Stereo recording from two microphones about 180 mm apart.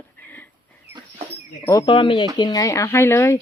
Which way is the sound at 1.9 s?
30° left (ahead or behind).